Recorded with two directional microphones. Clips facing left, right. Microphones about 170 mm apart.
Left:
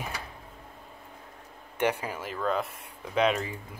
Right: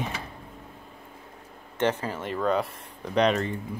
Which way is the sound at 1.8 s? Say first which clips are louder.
Right 2 dB; 10° left (ahead or behind).